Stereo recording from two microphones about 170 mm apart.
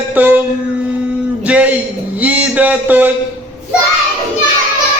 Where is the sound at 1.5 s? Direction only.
10° right (ahead or behind).